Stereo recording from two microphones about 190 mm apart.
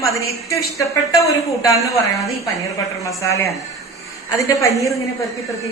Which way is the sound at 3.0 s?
15° left (ahead or behind).